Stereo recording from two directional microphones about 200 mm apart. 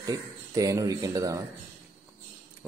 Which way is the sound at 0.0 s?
15° right (ahead or behind).